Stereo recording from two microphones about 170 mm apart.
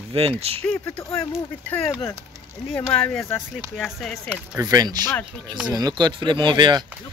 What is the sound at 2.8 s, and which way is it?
Speech, 10° left (ahead or behind).